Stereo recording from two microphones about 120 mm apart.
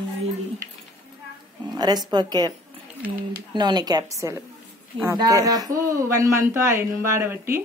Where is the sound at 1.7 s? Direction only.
35° right (ahead or behind).